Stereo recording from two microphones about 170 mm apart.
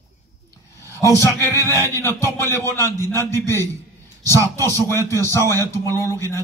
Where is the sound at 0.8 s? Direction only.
15° left (ahead or behind).